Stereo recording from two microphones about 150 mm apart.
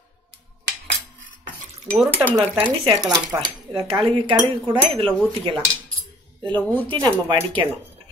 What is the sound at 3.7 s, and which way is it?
Speech, 40° right (ahead or behind).